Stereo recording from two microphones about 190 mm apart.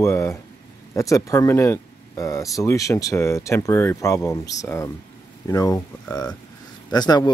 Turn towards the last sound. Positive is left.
turn(degrees=20)  # may be behind; listen again after turning